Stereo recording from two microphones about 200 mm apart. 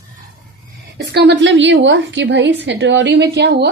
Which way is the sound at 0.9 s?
55° right (ahead or behind).